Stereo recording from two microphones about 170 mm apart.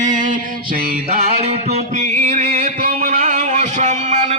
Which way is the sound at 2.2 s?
45° right (ahead or behind).